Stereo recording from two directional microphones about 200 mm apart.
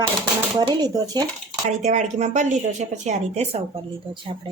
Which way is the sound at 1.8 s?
35° right (ahead or behind).